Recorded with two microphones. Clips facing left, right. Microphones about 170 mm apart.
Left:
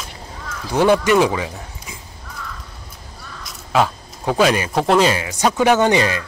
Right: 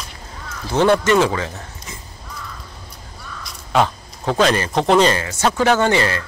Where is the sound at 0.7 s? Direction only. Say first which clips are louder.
Even; 10° left (ahead or behind).